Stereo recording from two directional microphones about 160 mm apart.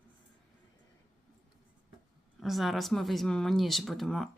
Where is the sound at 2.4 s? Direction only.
Centre (ahead or behind).